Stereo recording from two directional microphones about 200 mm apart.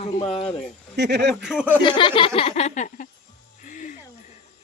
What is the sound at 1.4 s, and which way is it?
Speech, 5° right (ahead or behind).